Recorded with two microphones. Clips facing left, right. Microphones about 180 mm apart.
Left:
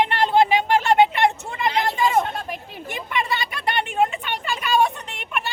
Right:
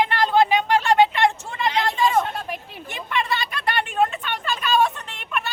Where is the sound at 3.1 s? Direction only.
15° left (ahead or behind).